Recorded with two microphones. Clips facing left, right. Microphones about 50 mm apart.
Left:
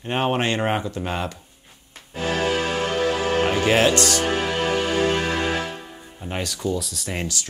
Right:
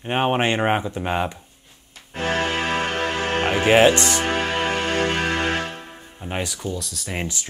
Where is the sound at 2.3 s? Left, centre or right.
Centre.